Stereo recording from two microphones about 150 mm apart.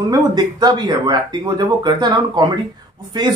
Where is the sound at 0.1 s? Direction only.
25° right (ahead or behind).